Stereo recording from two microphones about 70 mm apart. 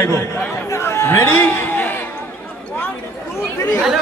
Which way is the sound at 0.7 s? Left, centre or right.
Left.